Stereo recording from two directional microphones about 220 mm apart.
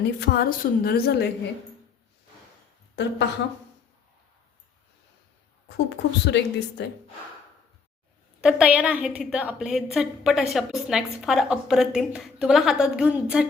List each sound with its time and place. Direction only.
0.2 s a woman's voice: 50° left (ahead or behind)
2.9 s a woman's voice: 50° left (ahead or behind)
5.6 s a woman's voice: 50° left (ahead or behind)
8.4 s a woman's voice: 5° right (ahead or behind)